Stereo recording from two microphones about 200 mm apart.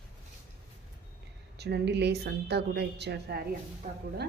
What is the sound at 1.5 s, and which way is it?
A woman's voice, 55° right (ahead or behind).